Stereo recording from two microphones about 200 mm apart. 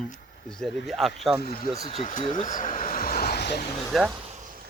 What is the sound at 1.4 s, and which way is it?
Speech, 50° left (ahead or behind).